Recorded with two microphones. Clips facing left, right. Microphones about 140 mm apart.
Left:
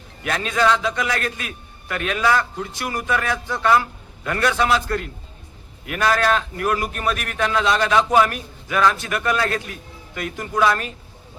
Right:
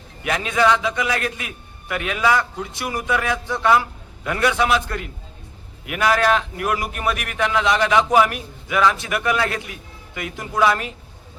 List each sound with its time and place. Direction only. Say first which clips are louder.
0.2 s a man's voice: right 1 dB; 15° right (ahead or behind)